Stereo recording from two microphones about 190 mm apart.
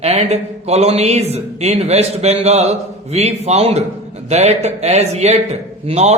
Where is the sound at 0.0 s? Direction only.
35° right (ahead or behind).